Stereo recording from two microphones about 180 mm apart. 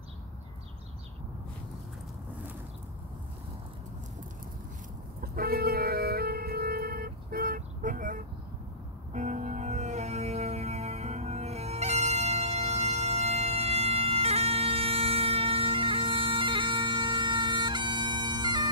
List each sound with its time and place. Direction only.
5.2 s music: 55° right (ahead or behind); by 18.7 s 25° right (ahead or behind)